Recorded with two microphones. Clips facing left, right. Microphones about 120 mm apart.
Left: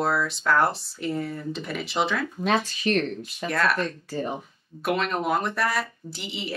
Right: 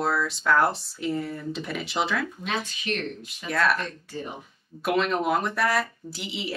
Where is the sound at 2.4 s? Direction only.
35° left (ahead or behind).